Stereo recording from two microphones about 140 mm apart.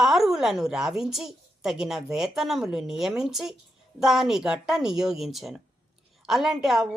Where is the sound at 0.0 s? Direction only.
Centre (ahead or behind).